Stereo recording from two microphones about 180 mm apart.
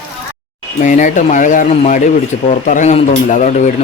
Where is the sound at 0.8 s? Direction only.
45° left (ahead or behind).